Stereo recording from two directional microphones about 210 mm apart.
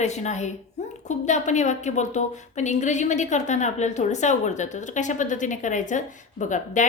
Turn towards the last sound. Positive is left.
turn(degrees=35)  # may be behind; listen again after turning